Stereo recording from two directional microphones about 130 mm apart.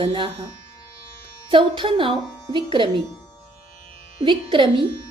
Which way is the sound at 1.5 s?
40° right (ahead or behind).